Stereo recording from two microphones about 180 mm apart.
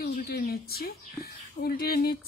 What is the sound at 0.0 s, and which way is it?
Speech, 60° left (ahead or behind).